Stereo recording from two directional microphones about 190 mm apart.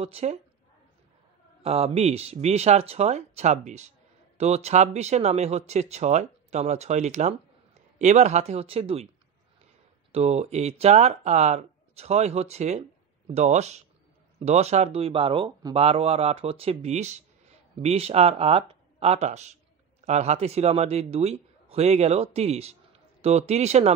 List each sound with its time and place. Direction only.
0.0 s speech: 35° right (ahead or behind)
1.6 s speech: 30° right (ahead or behind)
10.1 s speech: 35° right (ahead or behind)